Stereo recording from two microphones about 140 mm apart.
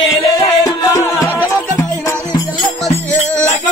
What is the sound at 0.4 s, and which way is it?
Music, 25° left (ahead or behind).